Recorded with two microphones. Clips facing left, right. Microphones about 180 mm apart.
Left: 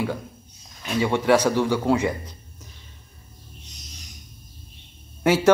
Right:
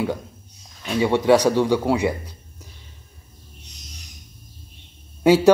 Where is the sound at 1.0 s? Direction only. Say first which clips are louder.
Right 3 dB; 20° right (ahead or behind).